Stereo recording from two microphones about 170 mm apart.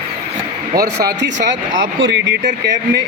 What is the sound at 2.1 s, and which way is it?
Speech, 90° right.